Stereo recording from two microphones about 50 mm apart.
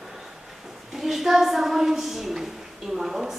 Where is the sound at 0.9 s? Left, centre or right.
Centre.